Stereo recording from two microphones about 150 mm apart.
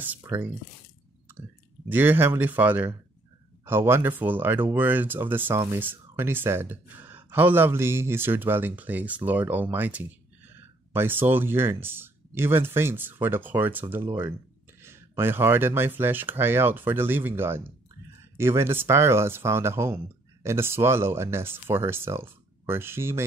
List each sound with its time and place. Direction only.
0.2 s speech: 15° right (ahead or behind)
1.9 s speech: 10° right (ahead or behind)